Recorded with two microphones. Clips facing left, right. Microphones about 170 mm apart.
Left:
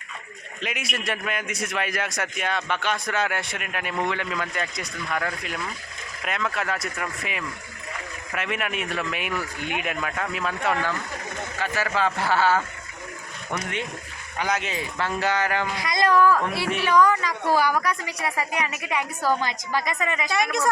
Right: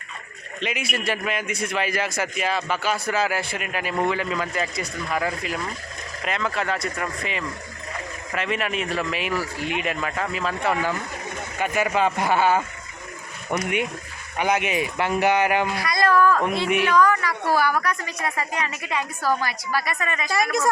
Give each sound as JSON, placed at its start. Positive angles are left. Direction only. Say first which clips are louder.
{"t": 0.6, "sound": "a man's voice", "louder": "right 3 dB", "side_deg": 0}
{"t": 11.6, "sound": "speech", "louder": "right 4 dB", "side_deg": -15}
{"t": 14.3, "sound": "speech", "louder": "right 5 dB", "side_deg": -20}
{"t": 15.7, "sound": "a woman's voice", "louder": "right 1 dB", "side_deg": 20}
{"t": 16.4, "sound": "speech", "louder": "right 4 dB", "side_deg": -15}
{"t": 16.8, "sound": "a woman's voice", "louder": "left 2 dB", "side_deg": 15}
{"t": 20.3, "sound": "a man's voice", "louder": "right 3 dB", "side_deg": 0}